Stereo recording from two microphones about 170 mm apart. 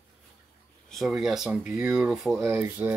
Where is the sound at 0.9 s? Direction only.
Centre (ahead or behind).